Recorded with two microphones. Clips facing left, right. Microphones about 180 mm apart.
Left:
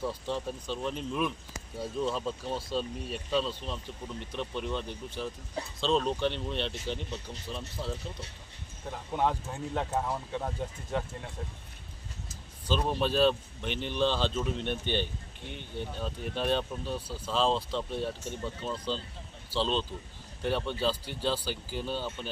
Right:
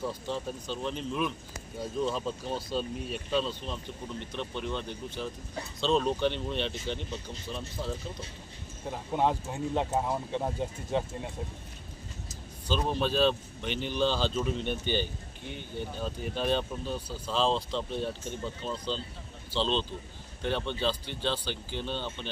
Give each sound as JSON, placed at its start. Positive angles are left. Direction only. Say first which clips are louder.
{"t": 0.0, "sound": "speech", "louder": "left 1 dB", "side_deg": 0}
{"t": 8.9, "sound": "speech", "louder": "right 2 dB", "side_deg": -15}
{"t": 12.6, "sound": "speech", "louder": "even", "side_deg": 0}